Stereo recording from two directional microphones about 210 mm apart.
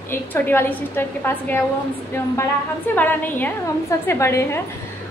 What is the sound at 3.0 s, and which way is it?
A woman's voice, 10° left (ahead or behind).